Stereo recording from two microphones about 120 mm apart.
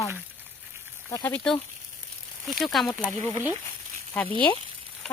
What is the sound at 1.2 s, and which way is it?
Speech, 15° left (ahead or behind).